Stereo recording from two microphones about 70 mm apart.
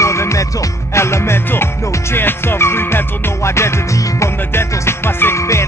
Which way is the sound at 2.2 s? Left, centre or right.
Left.